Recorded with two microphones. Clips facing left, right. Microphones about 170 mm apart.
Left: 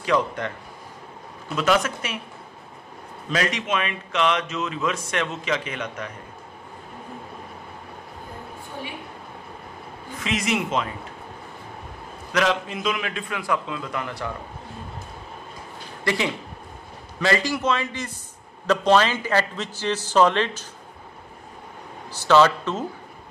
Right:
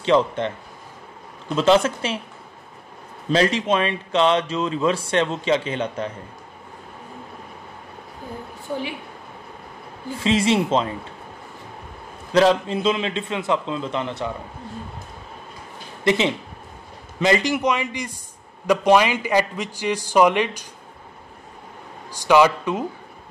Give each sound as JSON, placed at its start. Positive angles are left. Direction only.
{"t": 0.0, "sound": "a man's voice", "side_deg": -25}
{"t": 1.5, "sound": "a man's voice", "side_deg": -30}
{"t": 3.3, "sound": "speech", "side_deg": -30}
{"t": 10.1, "sound": "a man's voice", "side_deg": -30}
{"t": 12.3, "sound": "a man's voice", "side_deg": -30}
{"t": 16.0, "sound": "a man's voice", "side_deg": -20}
{"t": 22.1, "sound": "a man's voice", "side_deg": -15}